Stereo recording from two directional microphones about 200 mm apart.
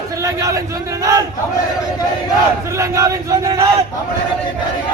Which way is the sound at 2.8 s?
15° right (ahead or behind).